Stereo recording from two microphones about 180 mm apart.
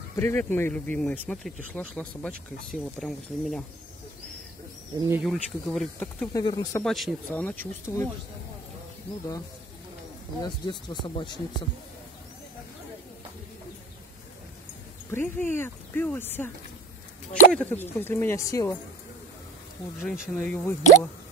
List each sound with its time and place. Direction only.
0.1 s speech: 10° left (ahead or behind)
5.2 s speech: centre (ahead or behind)
6.3 s speech: 20° left (ahead or behind)
6.8 s speech: centre (ahead or behind)
7.8 s speech: 15° left (ahead or behind)
10.4 s speech: 25° left (ahead or behind)
15.0 s speech: 10° left (ahead or behind)
20.0 s speech: 5° left (ahead or behind)